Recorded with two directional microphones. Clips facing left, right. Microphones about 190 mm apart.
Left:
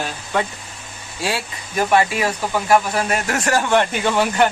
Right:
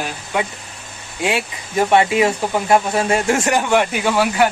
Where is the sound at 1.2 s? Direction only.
20° right (ahead or behind).